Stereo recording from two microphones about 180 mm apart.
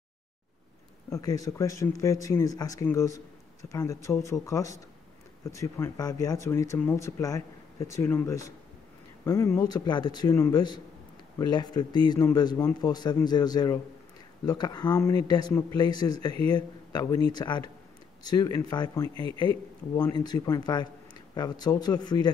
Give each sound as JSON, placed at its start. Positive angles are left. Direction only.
{"t": 1.1, "sound": "speech", "side_deg": 20}
{"t": 19.1, "sound": "speech", "side_deg": -30}
{"t": 20.1, "sound": "speech", "side_deg": 25}